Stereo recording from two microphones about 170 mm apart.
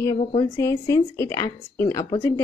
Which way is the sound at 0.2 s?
40° left (ahead or behind).